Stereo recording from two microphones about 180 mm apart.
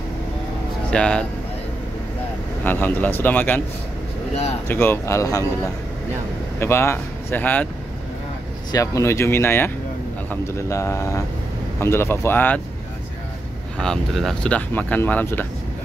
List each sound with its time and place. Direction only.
0.8 s speech: 5° left (ahead or behind)
2.6 s speech: 10° left (ahead or behind)
4.6 s speech: 10° left (ahead or behind)
6.6 s speech: 15° left (ahead or behind)
8.7 s speech: 15° left (ahead or behind)
10.7 s speech: 15° left (ahead or behind)
13.7 s speech: centre (ahead or behind)